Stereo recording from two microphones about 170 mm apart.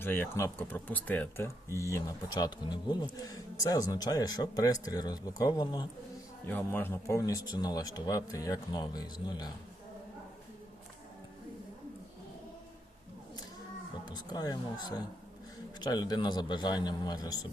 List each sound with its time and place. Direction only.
0.0 s speech: 10° left (ahead or behind)
6.4 s speech: 10° left (ahead or behind)
14.0 s speech: 25° left (ahead or behind)